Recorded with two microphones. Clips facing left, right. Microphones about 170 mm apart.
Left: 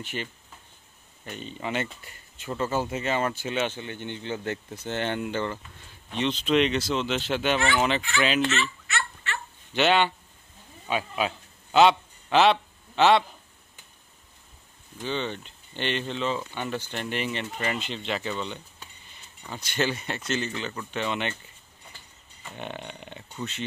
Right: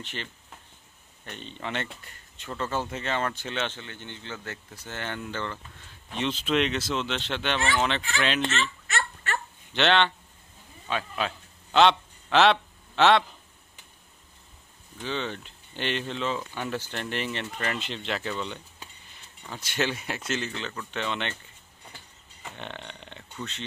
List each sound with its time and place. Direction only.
0.0 s speech: 10° left (ahead or behind)
6.1 s speech: centre (ahead or behind)
8.8 s a sound: 45° right (ahead or behind)
9.8 s speech: 10° left (ahead or behind)
10.9 s a sound: 10° left (ahead or behind)
15.0 s speech: centre (ahead or behind)
22.6 s speech: 10° left (ahead or behind)